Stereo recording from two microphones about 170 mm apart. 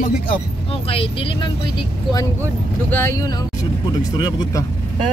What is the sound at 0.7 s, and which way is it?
Speech, 35° left (ahead or behind).